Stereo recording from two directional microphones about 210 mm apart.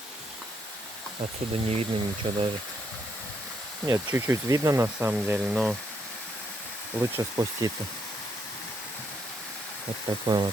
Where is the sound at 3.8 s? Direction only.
15° right (ahead or behind).